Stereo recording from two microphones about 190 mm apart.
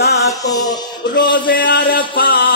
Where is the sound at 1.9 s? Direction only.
50° left (ahead or behind).